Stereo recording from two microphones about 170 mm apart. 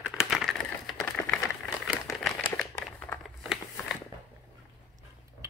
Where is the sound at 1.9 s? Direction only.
Centre (ahead or behind).